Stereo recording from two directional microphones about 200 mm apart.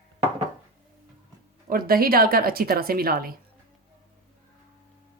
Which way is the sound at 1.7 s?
45° right (ahead or behind).